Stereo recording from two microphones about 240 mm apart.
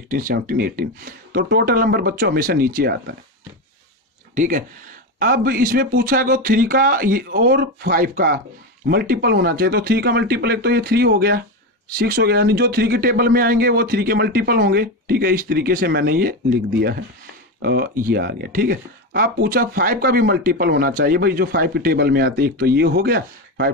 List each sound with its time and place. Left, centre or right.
0.1 s speech: right
4.4 s speech: right